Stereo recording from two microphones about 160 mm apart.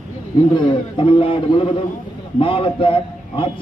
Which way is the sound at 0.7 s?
35° left (ahead or behind).